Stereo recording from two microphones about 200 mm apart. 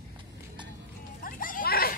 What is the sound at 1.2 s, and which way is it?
Goat, 45° left (ahead or behind).